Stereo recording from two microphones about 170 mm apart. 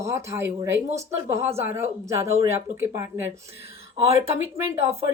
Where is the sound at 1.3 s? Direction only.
15° right (ahead or behind).